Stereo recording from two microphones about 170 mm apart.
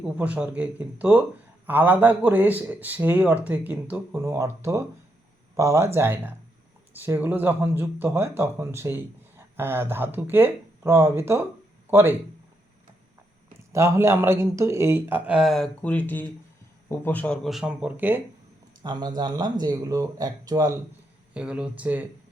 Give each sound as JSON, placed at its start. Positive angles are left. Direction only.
{"t": 0.2, "sound": "a man's voice", "side_deg": -10}
{"t": 13.7, "sound": "a man's voice", "side_deg": -15}
{"t": 18.8, "sound": "speech", "side_deg": -25}
{"t": 21.3, "sound": "a man's voice", "side_deg": -5}